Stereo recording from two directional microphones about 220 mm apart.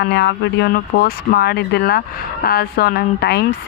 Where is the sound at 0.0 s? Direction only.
50° left (ahead or behind).